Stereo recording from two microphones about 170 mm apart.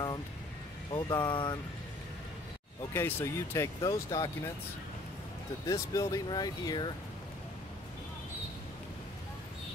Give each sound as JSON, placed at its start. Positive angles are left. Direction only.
{"t": 0.9, "sound": "speech", "side_deg": 25}
{"t": 2.9, "sound": "speech", "side_deg": 10}
{"t": 5.7, "sound": "speech", "side_deg": 20}